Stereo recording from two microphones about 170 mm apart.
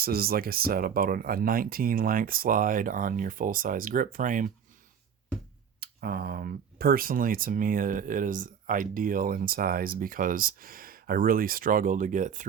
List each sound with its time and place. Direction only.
0.0 s speech: 60° right (ahead or behind)
5.8 s speech: 60° right (ahead or behind)